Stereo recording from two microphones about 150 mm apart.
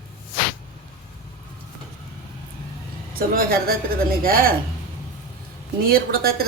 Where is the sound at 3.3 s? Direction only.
80° right.